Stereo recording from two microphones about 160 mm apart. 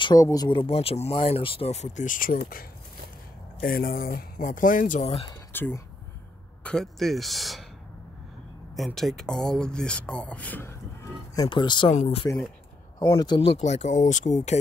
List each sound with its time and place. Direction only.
0.0 s speech: 25° left (ahead or behind); by 2.3 s 60° left (ahead or behind)
3.6 s speech: 70° left (ahead or behind)
5.5 s speech: 15° left (ahead or behind)
8.7 s speech: centre (ahead or behind); by 11.4 s 15° left (ahead or behind)
11.4 s speech: 30° left (ahead or behind)
11.9 s speech: 45° left (ahead or behind)
13.2 s speech: 30° left (ahead or behind); by 14.6 s 45° left (ahead or behind)